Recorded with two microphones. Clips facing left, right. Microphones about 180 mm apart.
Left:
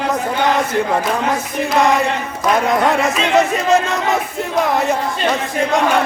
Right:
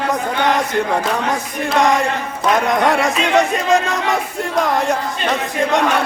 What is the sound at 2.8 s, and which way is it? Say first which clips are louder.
Speech: even; centre (ahead or behind).